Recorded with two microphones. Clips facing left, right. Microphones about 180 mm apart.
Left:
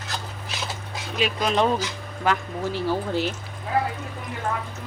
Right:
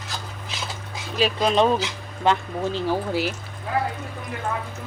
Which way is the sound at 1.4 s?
20° right (ahead or behind).